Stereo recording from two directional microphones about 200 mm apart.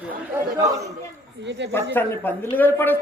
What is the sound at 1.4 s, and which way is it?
Speech, 60° right (ahead or behind).